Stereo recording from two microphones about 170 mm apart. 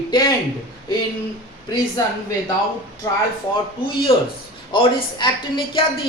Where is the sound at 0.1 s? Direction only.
25° left (ahead or behind).